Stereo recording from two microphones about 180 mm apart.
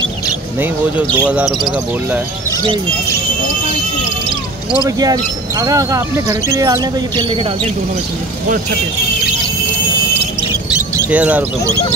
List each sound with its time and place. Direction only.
1.2 s speech: 5° right (ahead or behind)
4.8 s speech: 20° right (ahead or behind)
11.1 s speech: 10° right (ahead or behind)